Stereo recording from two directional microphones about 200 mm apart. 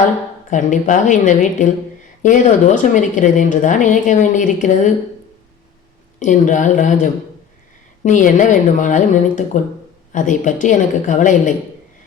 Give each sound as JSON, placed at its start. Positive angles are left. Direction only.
{"t": 0.5, "sound": "speech", "side_deg": 40}
{"t": 6.1, "sound": "speech", "side_deg": 40}